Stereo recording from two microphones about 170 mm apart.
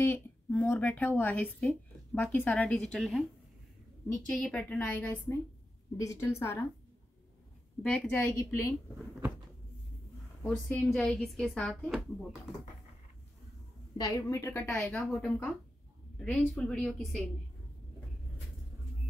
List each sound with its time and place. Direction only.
0.0 s a woman's voice: 10° left (ahead or behind)
4.3 s a woman's voice: 5° left (ahead or behind)
7.8 s speech: 5° left (ahead or behind)
8.1 s a woman's voice: 15° left (ahead or behind)
10.4 s speech: 5° left (ahead or behind)
13.9 s a woman's voice: 20° left (ahead or behind); by 17.2 s centre (ahead or behind)